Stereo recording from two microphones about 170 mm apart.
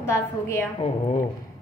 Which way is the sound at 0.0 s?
15° left (ahead or behind).